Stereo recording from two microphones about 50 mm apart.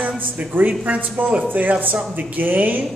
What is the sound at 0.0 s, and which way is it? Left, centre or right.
A man's voice, right.